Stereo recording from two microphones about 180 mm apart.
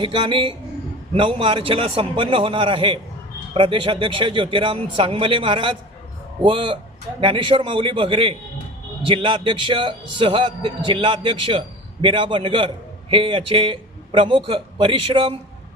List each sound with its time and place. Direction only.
0.0 s a man's voice: 25° right (ahead or behind)